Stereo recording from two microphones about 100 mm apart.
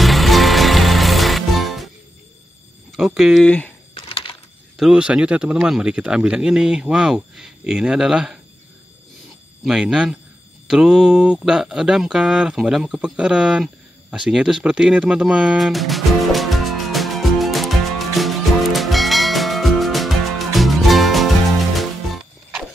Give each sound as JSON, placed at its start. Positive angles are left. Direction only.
{"t": 0.0, "sound": "music", "side_deg": 0}
{"t": 3.2, "sound": "speech", "side_deg": 0}
{"t": 3.4, "sound": "speech", "side_deg": 15}
{"t": 3.9, "sound": "a sound", "side_deg": 60}
{"t": 4.7, "sound": "speech", "side_deg": -5}
{"t": 9.7, "sound": "speech", "side_deg": -5}
{"t": 14.1, "sound": "music", "side_deg": -5}